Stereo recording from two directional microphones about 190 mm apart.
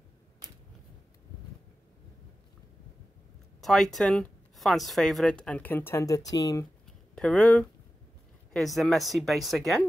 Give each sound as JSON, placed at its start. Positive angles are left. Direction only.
{"t": 3.6, "sound": "speech", "side_deg": 0}
{"t": 6.9, "sound": "a sound", "side_deg": 5}
{"t": 8.5, "sound": "speech", "side_deg": 0}